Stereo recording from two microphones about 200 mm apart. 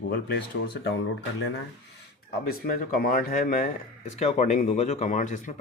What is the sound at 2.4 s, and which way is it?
Speech, 45° left (ahead or behind).